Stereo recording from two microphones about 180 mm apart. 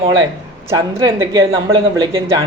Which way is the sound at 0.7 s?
20° right (ahead or behind).